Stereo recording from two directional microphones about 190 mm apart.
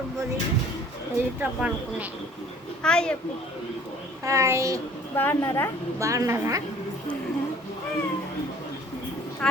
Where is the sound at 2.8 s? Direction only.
5° left (ahead or behind).